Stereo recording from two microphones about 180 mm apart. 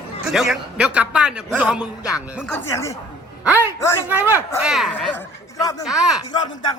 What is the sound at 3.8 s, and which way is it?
Speech, 15° left (ahead or behind).